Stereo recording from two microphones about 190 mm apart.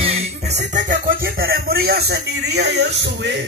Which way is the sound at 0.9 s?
50° right (ahead or behind).